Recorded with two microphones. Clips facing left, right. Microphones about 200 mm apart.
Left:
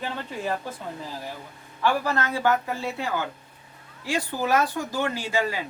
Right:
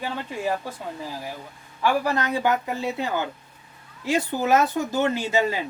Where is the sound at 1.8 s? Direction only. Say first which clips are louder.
Right 2 dB; 15° right (ahead or behind).